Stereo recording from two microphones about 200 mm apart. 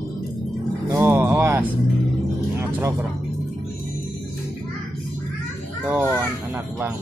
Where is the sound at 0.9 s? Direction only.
10° right (ahead or behind).